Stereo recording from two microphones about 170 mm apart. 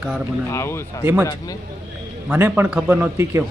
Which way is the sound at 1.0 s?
15° right (ahead or behind).